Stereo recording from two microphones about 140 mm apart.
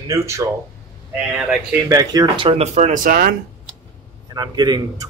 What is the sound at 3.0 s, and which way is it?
Speech, 90° right.